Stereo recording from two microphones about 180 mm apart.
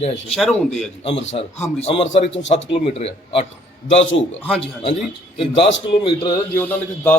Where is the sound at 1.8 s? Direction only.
35° left (ahead or behind).